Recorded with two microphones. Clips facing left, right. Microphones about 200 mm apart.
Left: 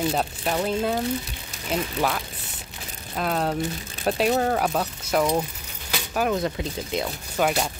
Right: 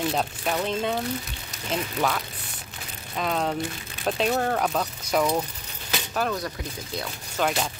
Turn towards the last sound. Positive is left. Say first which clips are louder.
# left 3 dB
turn(degrees=5)  # may be behind; listen again after turning